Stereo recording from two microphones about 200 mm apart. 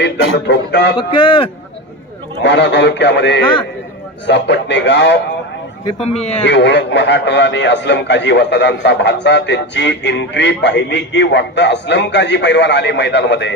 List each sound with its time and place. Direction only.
0.0 s a man's voice: 60° left (ahead or behind)
0.9 s speech: 25° left (ahead or behind)
2.4 s a man's voice: 60° left (ahead or behind)
6.0 s speech: 35° left (ahead or behind)
6.4 s a man's voice: 60° left (ahead or behind)